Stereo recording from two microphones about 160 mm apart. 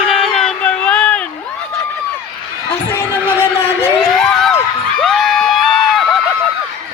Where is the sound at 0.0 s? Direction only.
Centre (ahead or behind).